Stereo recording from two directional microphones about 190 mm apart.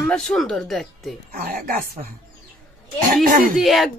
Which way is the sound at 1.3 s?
50° right (ahead or behind).